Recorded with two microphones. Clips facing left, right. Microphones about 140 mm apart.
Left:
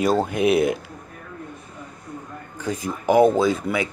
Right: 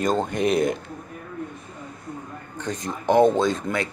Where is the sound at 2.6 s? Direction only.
5° left (ahead or behind).